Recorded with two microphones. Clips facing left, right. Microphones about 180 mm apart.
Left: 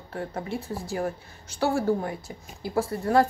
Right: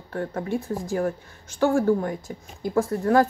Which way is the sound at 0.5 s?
15° right (ahead or behind).